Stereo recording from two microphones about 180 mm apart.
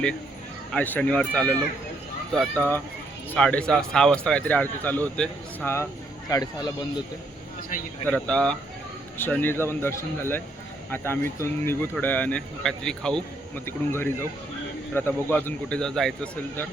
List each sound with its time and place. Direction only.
0.7 s a man's voice: 10° left (ahead or behind)
8.1 s a man's voice: 5° left (ahead or behind)